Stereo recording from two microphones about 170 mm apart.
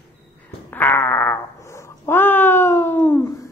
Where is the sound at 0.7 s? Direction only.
10° left (ahead or behind).